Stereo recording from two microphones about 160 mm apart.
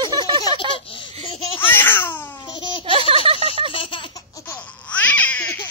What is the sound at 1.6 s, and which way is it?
Babbling, 15° left (ahead or behind).